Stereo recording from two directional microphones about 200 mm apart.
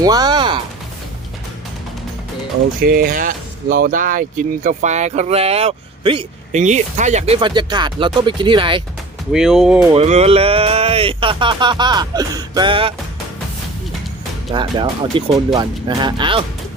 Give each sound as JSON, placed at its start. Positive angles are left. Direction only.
{"t": 0.0, "sound": "music", "side_deg": -20}
{"t": 2.8, "sound": "speech", "side_deg": -45}
{"t": 9.3, "sound": "speech", "side_deg": 0}
{"t": 9.9, "sound": "speech", "side_deg": -30}
{"t": 14.5, "sound": "speech", "side_deg": -25}